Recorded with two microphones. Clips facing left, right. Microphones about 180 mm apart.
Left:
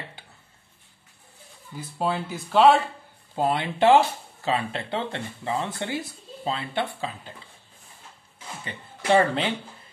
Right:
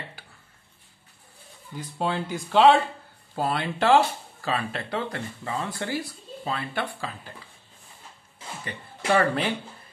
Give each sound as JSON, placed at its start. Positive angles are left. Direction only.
{"t": 1.8, "sound": "speech", "side_deg": 5}
{"t": 3.3, "sound": "speech", "side_deg": 20}
{"t": 9.1, "sound": "speech", "side_deg": 25}